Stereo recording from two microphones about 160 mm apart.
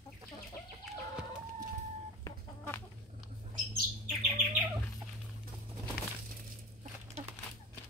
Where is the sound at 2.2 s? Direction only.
15° left (ahead or behind).